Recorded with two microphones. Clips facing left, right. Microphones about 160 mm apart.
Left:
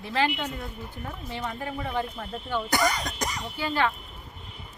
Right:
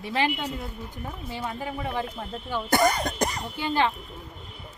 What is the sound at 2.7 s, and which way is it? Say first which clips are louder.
Speech: right 5 dB; 50° right (ahead or behind).